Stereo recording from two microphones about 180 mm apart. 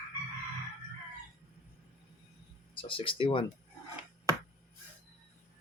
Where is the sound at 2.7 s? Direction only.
30° left (ahead or behind).